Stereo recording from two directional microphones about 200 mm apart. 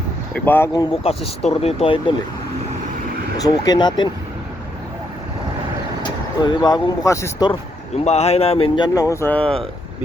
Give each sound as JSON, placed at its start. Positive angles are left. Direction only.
{"t": 0.3, "sound": "speech", "side_deg": 10}
{"t": 1.0, "sound": "speech", "side_deg": 30}
{"t": 3.3, "sound": "speech", "side_deg": 20}
{"t": 6.4, "sound": "speech", "side_deg": 20}
{"t": 8.0, "sound": "speech", "side_deg": 30}